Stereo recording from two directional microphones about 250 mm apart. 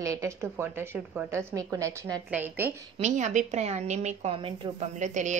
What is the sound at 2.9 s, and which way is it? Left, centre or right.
A woman's voice, right.